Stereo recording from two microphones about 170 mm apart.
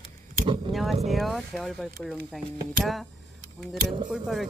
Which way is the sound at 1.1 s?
Centre (ahead or behind).